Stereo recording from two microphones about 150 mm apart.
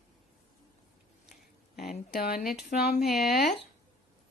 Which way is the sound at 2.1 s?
85° left.